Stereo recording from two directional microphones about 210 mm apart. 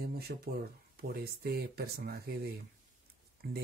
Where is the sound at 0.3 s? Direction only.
55° right (ahead or behind).